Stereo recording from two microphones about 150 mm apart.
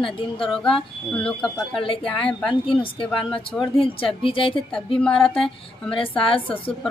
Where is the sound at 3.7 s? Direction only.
35° left (ahead or behind).